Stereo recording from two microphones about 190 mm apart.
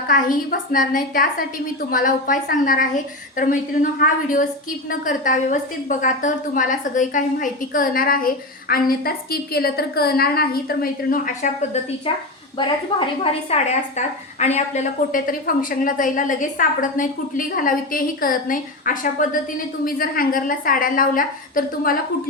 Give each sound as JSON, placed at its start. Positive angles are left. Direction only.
{"t": 0.1, "sound": "a woman's voice", "side_deg": 45}
{"t": 12.9, "sound": "a woman's voice", "side_deg": 30}